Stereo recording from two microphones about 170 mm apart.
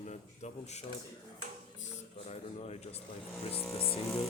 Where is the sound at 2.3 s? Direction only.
40° left (ahead or behind).